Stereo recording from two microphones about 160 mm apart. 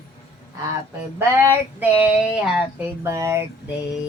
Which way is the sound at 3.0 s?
20° right (ahead or behind).